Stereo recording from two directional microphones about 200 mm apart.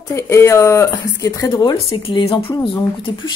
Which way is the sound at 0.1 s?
15° left (ahead or behind).